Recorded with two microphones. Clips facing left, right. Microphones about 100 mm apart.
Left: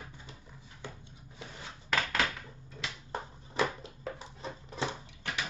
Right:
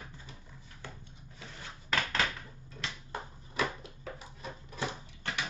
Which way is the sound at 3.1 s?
30° left (ahead or behind).